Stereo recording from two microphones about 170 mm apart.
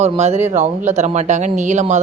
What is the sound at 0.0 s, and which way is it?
A woman's voice, 40° right (ahead or behind).